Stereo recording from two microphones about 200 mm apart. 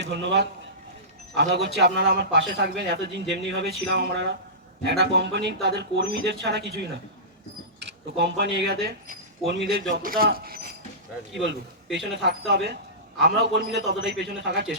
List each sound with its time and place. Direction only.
0.0 s a man's voice: 60° right (ahead or behind)
9.6 s speech: 45° right (ahead or behind)
11.9 s a man's voice: 60° right (ahead or behind)